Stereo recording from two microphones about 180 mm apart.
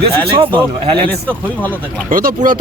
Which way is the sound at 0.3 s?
25° right (ahead or behind).